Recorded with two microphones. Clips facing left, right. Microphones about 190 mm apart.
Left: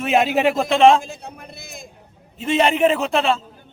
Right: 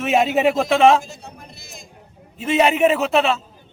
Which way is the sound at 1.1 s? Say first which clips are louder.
Left 3 dB; 55° left (ahead or behind).